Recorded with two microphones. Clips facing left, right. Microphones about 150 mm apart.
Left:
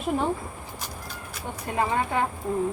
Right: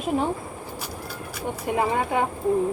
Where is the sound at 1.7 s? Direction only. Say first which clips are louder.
Right 3 dB; 20° right (ahead or behind).